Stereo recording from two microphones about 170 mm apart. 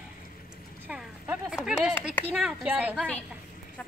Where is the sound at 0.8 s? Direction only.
10° right (ahead or behind).